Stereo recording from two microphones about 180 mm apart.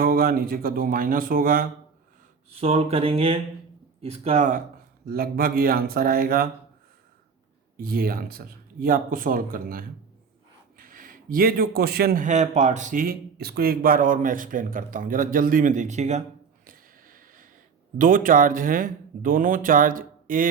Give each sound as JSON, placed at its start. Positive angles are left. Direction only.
{"t": 0.0, "sound": "a man's voice", "side_deg": -55}
{"t": 2.6, "sound": "a sound", "side_deg": -35}
{"t": 5.0, "sound": "speech", "side_deg": -55}
{"t": 7.8, "sound": "a man's voice", "side_deg": -55}
{"t": 16.6, "sound": "a sound", "side_deg": -50}
{"t": 17.9, "sound": "a man's voice", "side_deg": -50}